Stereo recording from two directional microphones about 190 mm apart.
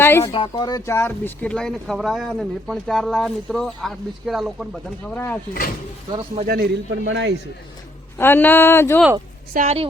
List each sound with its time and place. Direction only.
0.0 s speech: 10° left (ahead or behind)
6.1 s speech: 35° right (ahead or behind)
6.5 s a man's voice: 55° right (ahead or behind)
8.2 s speech: 10° left (ahead or behind)
9.5 s a woman's voice: 50° right (ahead or behind)